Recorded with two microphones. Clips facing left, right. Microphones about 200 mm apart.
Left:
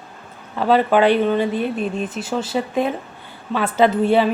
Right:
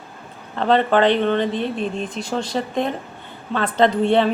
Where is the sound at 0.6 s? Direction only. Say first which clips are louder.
Left 1 dB; 5° left (ahead or behind).